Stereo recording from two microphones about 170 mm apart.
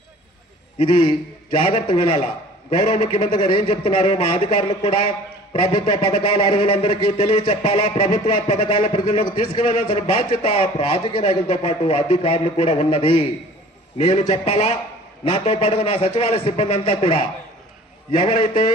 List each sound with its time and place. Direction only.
0.8 s a man's voice: 30° left (ahead or behind)